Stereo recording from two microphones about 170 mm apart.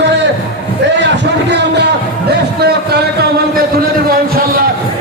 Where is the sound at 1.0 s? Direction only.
90° right.